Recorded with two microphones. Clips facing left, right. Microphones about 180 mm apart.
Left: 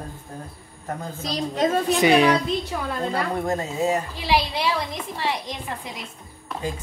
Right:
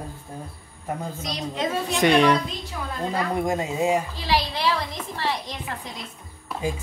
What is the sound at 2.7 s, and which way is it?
Speech, 55° left (ahead or behind).